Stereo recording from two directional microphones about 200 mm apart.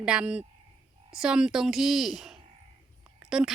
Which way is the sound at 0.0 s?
5° right (ahead or behind).